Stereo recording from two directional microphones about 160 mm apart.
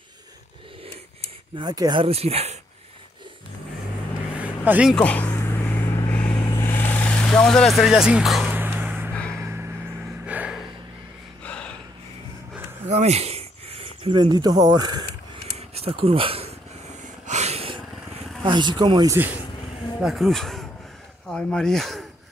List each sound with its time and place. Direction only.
1.2 s speech: 25° right (ahead or behind)
4.4 s vehicle: 10° right (ahead or behind)
4.9 s speech: 10° left (ahead or behind)
5.3 s vehicle: 15° left (ahead or behind); by 8.5 s centre (ahead or behind)
8.5 s a sound: 10° right (ahead or behind)
9.4 s vehicle: 15° right (ahead or behind)
10.2 s gasp: 10° right (ahead or behind)
11.4 s a sound: 5° left (ahead or behind)
12.8 s speech: 40° right (ahead or behind); by 15.0 s 25° right (ahead or behind)
15.5 s a sound: 40° right (ahead or behind)
17.3 s snort: 40° right (ahead or behind)
18.4 s speech: 30° right (ahead or behind)
19.1 s speech: 10° right (ahead or behind)
20.0 s speech: centre (ahead or behind)